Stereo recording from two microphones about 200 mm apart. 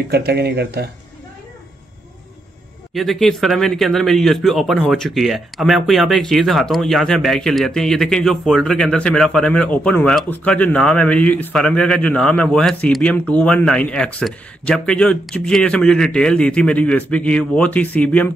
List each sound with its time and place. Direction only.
0.1 s speech: 55° right (ahead or behind)
2.9 s a man's voice: centre (ahead or behind)